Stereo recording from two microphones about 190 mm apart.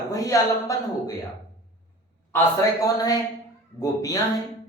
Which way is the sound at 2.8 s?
20° left (ahead or behind).